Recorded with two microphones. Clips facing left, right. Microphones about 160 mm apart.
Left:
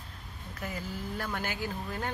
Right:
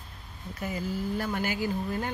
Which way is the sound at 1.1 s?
5° right (ahead or behind).